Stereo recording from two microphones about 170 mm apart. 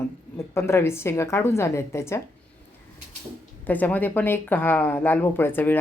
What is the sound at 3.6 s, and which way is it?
A woman's voice, 10° left (ahead or behind).